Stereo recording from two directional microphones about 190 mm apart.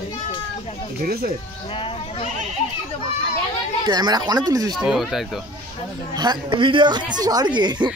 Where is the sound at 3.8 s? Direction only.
20° right (ahead or behind).